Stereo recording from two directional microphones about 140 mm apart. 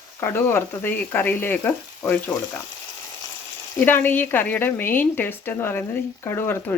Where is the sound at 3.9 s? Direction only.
15° left (ahead or behind).